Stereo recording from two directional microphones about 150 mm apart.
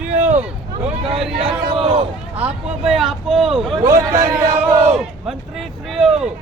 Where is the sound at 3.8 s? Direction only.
20° right (ahead or behind).